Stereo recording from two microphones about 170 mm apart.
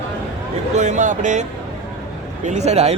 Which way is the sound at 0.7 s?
45° right (ahead or behind).